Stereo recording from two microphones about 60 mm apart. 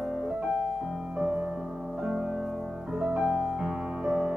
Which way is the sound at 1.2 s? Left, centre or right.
Right.